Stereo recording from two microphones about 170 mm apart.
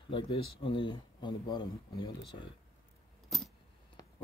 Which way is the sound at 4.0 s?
25° left (ahead or behind).